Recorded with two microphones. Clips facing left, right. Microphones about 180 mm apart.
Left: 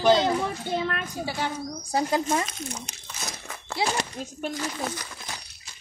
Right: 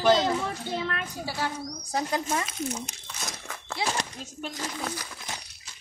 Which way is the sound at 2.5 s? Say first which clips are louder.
Right 4 dB; 5° right (ahead or behind).